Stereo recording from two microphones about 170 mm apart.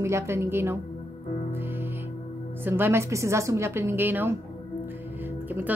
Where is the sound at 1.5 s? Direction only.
15° right (ahead or behind).